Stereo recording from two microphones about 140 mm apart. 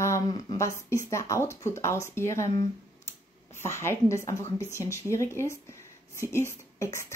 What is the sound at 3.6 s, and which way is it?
A woman's voice, 20° left (ahead or behind).